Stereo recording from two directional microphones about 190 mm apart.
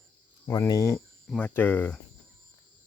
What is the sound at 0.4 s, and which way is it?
Speech, 15° left (ahead or behind).